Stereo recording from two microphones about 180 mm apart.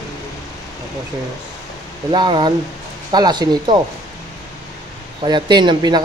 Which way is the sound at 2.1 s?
25° right (ahead or behind).